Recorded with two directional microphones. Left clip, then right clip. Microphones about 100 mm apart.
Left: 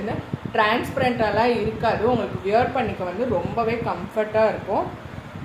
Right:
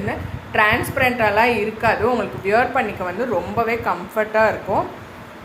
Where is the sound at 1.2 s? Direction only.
30° right (ahead or behind).